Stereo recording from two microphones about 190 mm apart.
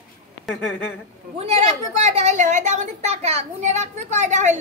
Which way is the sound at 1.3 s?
35° right (ahead or behind).